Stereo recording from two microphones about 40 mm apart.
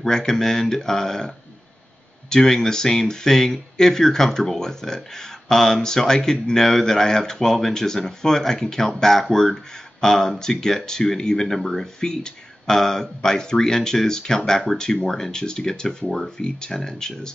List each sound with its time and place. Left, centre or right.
0.0 s a man's voice: centre